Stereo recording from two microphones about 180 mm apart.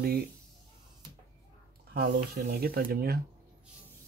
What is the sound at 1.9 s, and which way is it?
Speech, 60° right (ahead or behind).